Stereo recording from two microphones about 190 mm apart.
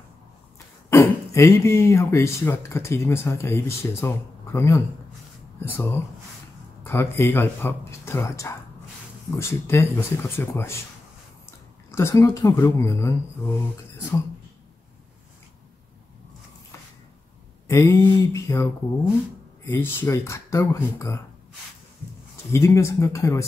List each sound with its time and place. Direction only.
0.8 s speech: 15° left (ahead or behind)
11.9 s speech: 15° left (ahead or behind)
17.6 s speech: 15° left (ahead or behind)
22.5 s speech: 15° left (ahead or behind)